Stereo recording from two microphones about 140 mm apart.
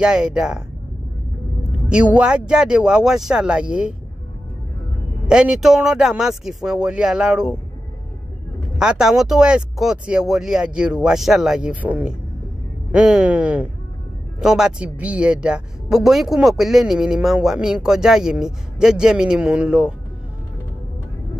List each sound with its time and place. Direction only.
0.0 s speech: 5° right (ahead or behind)
1.9 s speech: 10° right (ahead or behind)
5.3 s speech: 5° right (ahead or behind)
8.7 s speech: 5° right (ahead or behind)